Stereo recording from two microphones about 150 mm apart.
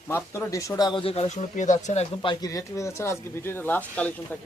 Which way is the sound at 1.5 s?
55° left (ahead or behind).